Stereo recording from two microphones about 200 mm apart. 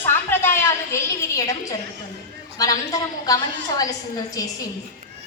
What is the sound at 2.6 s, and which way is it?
A woman's voice, 20° left (ahead or behind).